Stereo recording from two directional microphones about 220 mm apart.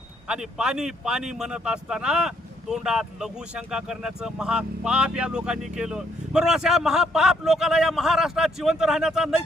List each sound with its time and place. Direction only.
0.3 s speech: 5° right (ahead or behind)